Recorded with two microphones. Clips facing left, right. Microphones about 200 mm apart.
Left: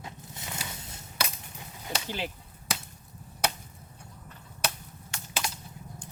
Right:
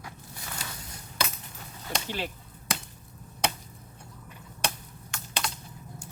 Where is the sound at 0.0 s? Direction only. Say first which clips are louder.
Left 1 dB; 20° left (ahead or behind).